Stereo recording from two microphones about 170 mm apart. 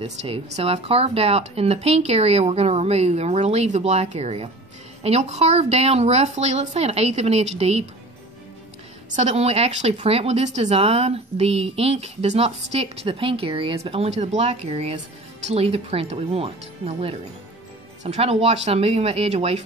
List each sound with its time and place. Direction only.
0.0 s speech: 40° right (ahead or behind)
9.1 s speech: 40° right (ahead or behind)